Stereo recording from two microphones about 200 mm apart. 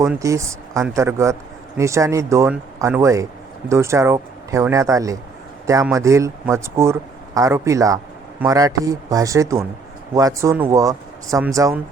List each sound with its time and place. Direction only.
0.0 s speech: 15° right (ahead or behind)